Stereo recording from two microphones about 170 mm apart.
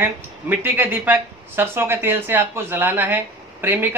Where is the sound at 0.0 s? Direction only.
10° right (ahead or behind).